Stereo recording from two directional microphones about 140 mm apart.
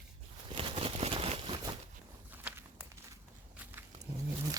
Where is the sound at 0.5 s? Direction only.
45° right (ahead or behind).